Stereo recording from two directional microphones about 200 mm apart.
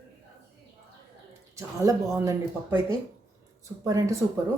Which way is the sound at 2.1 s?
15° right (ahead or behind).